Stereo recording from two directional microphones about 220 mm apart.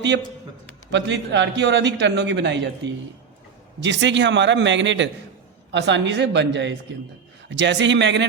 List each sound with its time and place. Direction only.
0.9 s a man's voice: 55° right (ahead or behind)